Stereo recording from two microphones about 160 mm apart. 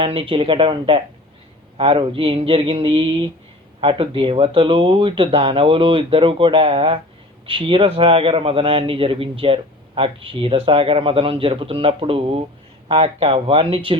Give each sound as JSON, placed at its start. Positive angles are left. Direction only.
{"t": 0.0, "sound": "a man's voice", "side_deg": -35}